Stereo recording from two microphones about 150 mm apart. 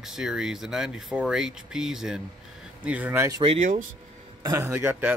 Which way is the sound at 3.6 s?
60° right (ahead or behind).